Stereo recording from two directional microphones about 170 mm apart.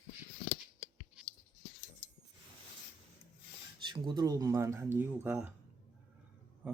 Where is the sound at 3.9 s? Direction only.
25° right (ahead or behind); by 5.5 s 5° right (ahead or behind).